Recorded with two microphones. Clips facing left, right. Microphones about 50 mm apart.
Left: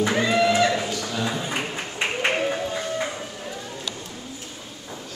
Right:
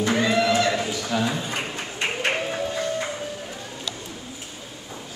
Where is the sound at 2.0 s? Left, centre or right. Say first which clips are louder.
Left 2 dB; centre.